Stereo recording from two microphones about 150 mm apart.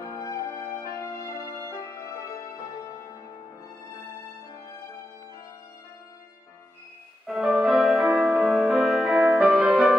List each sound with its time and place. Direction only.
0.0 s music: 20° left (ahead or behind)
7.2 s music: 5° right (ahead or behind)